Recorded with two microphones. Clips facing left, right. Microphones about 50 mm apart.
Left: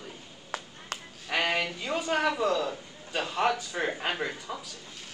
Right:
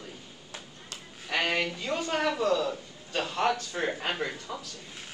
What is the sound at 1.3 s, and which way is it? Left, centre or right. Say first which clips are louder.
A man's voice: even; centre.